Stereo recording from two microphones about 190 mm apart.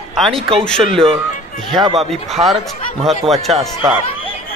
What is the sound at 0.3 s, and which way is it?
Speech, 30° right (ahead or behind).